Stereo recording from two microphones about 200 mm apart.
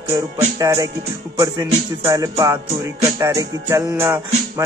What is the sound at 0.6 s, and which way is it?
Speech, 20° right (ahead or behind).